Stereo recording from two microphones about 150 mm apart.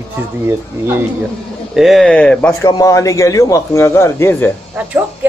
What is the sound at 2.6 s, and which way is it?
A man's voice, 20° left (ahead or behind).